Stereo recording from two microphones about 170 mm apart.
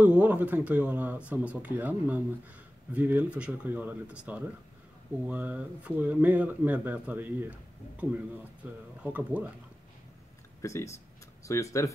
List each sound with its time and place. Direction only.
0.0 s speech: 10° right (ahead or behind)
8.6 s speech: 10° right (ahead or behind)
10.6 s speech: 15° left (ahead or behind)